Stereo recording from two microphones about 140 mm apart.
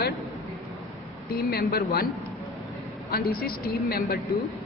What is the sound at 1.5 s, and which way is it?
Speech, 90° left.